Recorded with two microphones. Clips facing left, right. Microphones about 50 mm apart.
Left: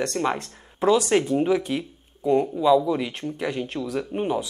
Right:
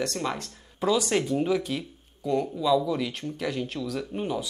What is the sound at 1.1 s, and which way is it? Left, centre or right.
Speech, centre.